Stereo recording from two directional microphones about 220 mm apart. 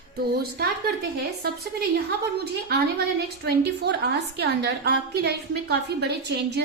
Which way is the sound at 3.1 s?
50° right (ahead or behind).